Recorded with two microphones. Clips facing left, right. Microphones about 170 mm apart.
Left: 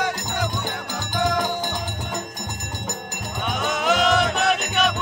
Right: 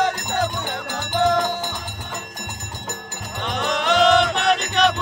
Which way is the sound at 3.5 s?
5° left (ahead or behind).